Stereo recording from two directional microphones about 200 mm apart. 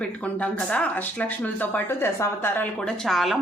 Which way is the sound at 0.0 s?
5° left (ahead or behind).